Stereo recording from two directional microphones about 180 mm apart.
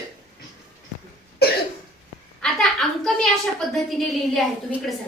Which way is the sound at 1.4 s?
60° left (ahead or behind).